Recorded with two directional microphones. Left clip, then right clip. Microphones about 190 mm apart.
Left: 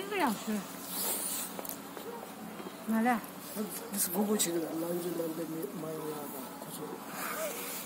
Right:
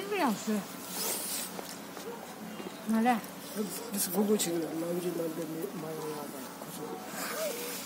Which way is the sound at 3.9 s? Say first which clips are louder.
Right 3 dB; 45° right (ahead or behind).